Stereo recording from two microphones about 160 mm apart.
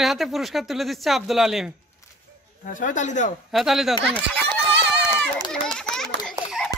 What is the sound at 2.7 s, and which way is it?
Speech, 55° left (ahead or behind).